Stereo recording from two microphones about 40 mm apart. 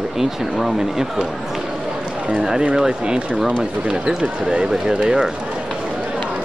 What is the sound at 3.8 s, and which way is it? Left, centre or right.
Speech, right.